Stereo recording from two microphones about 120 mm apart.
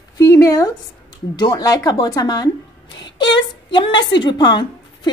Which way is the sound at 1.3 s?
35° left (ahead or behind).